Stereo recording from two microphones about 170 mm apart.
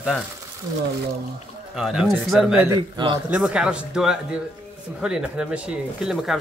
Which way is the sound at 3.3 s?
5° right (ahead or behind).